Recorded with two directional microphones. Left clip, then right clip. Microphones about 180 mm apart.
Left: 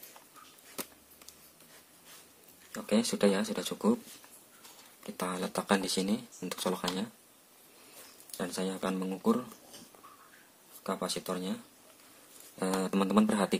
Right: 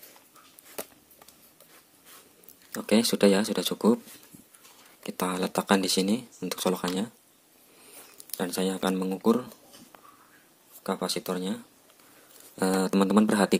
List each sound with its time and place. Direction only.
2.7 s speech: 35° right (ahead or behind)
5.0 s speech: 35° right (ahead or behind)
8.4 s speech: 40° right (ahead or behind)
10.8 s speech: 35° right (ahead or behind)